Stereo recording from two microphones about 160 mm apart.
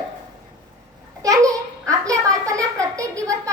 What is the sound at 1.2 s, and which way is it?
Babbling, 20° right (ahead or behind).